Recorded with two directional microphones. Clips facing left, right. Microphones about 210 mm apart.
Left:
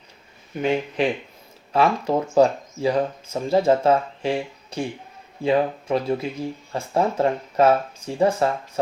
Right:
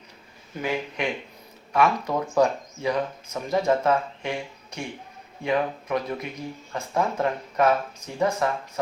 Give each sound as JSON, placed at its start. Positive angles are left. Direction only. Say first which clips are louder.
{"t": 0.5, "sound": "speech", "louder": "left 6 dB", "side_deg": 25}